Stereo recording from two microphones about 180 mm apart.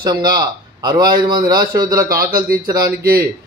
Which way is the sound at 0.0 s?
25° right (ahead or behind).